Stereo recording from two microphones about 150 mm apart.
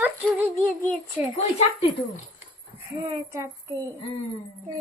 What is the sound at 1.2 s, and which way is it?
Speech, 10° right (ahead or behind).